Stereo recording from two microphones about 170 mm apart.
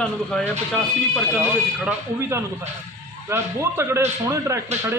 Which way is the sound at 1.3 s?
Centre (ahead or behind).